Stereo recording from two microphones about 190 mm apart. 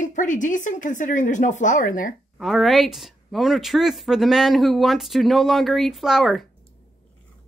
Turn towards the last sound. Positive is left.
turn(degrees=0)  # may be behind; listen again after turning